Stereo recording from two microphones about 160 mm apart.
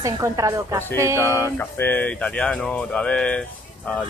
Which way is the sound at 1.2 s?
15° left (ahead or behind).